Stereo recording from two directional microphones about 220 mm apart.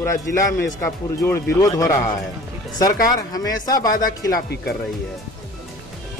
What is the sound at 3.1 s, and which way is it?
Speech, 15° left (ahead or behind).